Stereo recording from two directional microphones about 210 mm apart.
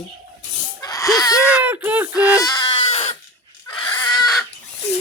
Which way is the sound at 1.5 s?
5° right (ahead or behind).